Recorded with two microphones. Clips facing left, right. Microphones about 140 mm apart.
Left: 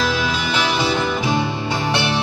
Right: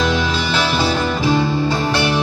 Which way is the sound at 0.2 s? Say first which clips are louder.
Right 2 dB; 10° left (ahead or behind).